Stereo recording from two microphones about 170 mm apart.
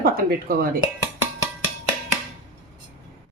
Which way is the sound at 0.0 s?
60° right (ahead or behind).